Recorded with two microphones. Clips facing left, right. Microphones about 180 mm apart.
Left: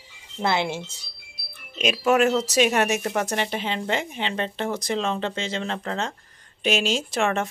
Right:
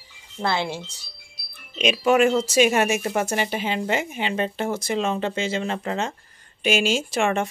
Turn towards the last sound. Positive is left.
turn(degrees=0)  # may be behind; listen again after turning